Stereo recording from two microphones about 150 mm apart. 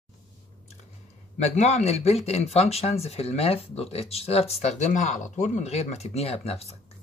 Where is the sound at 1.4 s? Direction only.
45° left (ahead or behind).